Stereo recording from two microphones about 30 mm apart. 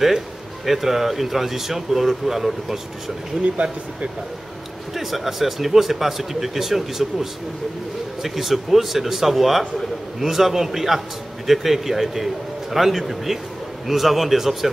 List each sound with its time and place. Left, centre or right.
0.7 s speech: centre
3.5 s speech: right
4.9 s a man's voice: centre